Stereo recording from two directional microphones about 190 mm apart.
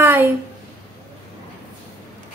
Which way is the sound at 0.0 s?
10° right (ahead or behind).